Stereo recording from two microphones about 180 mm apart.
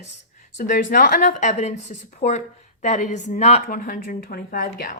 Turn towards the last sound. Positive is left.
turn(degrees=50)  # may be behind; listen again after turning